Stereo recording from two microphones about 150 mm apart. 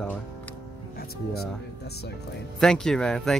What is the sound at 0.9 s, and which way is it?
Speech, 90° left.